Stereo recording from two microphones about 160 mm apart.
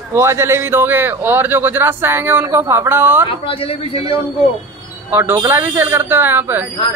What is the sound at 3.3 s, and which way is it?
Speech, 35° left (ahead or behind).